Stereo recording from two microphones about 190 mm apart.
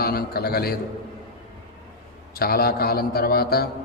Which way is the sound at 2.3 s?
55° left (ahead or behind).